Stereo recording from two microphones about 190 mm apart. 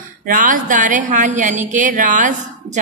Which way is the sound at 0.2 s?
45° right (ahead or behind).